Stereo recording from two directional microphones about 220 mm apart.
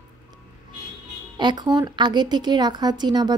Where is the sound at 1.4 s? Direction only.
20° right (ahead or behind).